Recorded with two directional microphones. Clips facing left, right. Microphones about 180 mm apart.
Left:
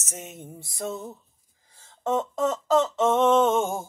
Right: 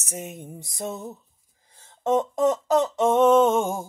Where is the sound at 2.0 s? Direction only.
20° right (ahead or behind).